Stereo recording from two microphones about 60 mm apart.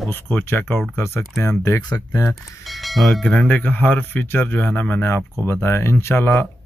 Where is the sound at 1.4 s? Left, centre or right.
Left.